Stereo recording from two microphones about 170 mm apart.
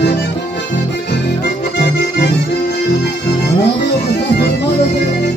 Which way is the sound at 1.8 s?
85° left.